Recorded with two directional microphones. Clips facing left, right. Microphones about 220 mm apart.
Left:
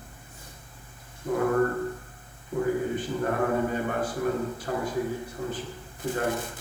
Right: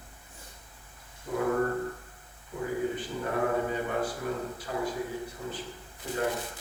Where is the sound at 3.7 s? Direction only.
50° left (ahead or behind).